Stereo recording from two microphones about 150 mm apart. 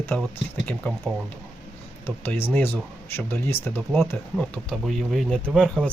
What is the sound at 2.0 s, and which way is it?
Speech, 15° left (ahead or behind).